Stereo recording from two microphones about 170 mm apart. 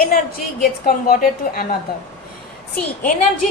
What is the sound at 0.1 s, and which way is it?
A woman's voice, 60° left (ahead or behind).